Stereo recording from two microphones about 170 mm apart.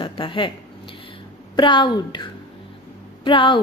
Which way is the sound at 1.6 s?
25° left (ahead or behind).